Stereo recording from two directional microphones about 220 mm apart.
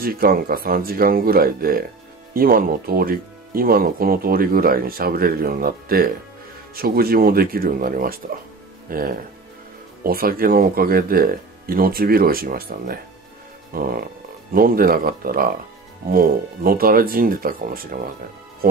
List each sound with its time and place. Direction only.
0.0 s speech: 40° right (ahead or behind)